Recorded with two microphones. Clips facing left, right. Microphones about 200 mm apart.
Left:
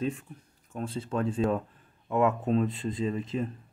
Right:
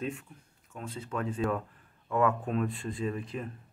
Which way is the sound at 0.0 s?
30° left (ahead or behind).